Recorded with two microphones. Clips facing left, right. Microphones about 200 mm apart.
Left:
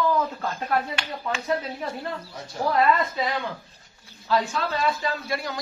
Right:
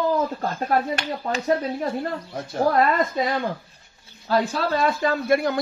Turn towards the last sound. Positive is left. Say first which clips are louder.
# right 9 dB
turn(degrees=-55)  # may be behind; listen again after turning